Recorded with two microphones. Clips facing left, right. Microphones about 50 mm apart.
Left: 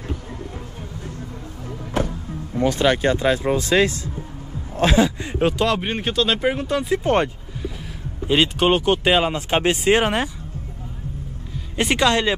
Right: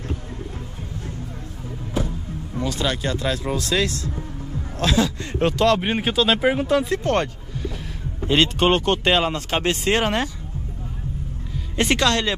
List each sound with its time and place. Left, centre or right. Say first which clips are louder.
2.0 s music: left 3 dB; left
2.5 s speech: left 6 dB; left
5.4 s speech: right 1 dB; centre
5.8 s speech: right 1 dB; centre
7.0 s speech: left 2 dB; centre
8.3 s speech: even; centre
11.7 s speech: left 1 dB; centre